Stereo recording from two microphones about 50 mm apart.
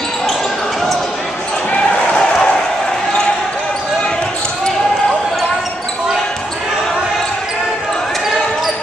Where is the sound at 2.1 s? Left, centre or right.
Centre.